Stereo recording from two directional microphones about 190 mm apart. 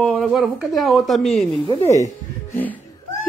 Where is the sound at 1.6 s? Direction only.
25° left (ahead or behind).